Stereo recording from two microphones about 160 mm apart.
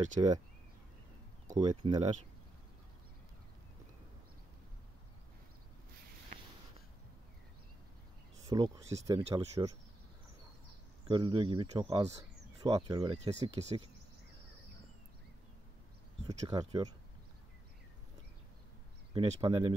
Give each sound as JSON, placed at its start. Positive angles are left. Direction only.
{"t": 0.2, "sound": "speech", "side_deg": -30}
{"t": 1.6, "sound": "speech", "side_deg": -25}
{"t": 8.5, "sound": "speech", "side_deg": -20}
{"t": 11.1, "sound": "speech", "side_deg": -30}
{"t": 13.2, "sound": "speech", "side_deg": -40}
{"t": 16.4, "sound": "speech", "side_deg": -25}
{"t": 19.1, "sound": "speech", "side_deg": -30}